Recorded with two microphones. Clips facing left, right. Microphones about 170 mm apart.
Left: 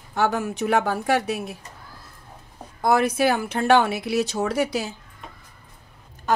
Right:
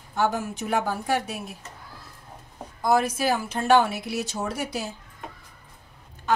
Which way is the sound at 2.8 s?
65° left (ahead or behind).